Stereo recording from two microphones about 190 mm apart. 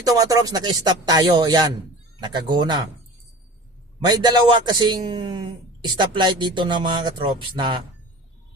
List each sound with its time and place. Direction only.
0.0 s a man's voice: 20° right (ahead or behind)
4.0 s a man's voice: 20° right (ahead or behind)